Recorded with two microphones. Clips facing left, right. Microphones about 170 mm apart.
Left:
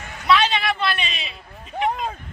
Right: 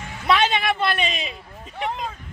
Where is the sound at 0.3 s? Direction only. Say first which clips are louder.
Left 1 dB; 50° right (ahead or behind).